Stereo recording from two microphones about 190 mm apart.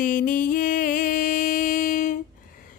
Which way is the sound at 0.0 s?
45° left (ahead or behind).